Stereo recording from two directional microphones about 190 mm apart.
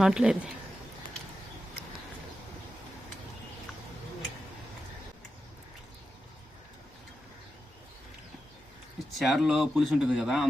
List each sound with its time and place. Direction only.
0.0 s speech: 5° right (ahead or behind)
9.1 s speech: centre (ahead or behind)